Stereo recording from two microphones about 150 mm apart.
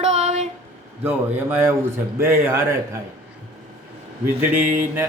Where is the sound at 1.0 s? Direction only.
15° right (ahead or behind).